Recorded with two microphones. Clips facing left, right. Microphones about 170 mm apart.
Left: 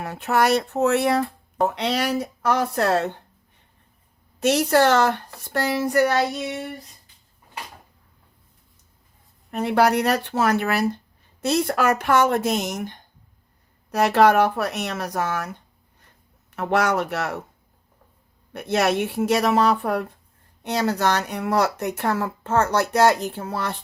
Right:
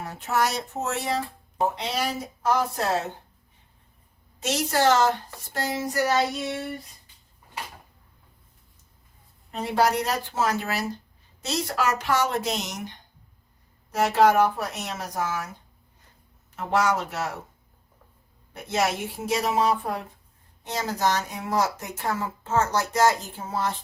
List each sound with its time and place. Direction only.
0.0 s speech: 65° left (ahead or behind)
4.4 s speech: 60° left (ahead or behind)
9.5 s speech: 60° left (ahead or behind)
13.9 s speech: 65° left (ahead or behind)
16.6 s speech: 65° left (ahead or behind)
18.5 s speech: 65° left (ahead or behind)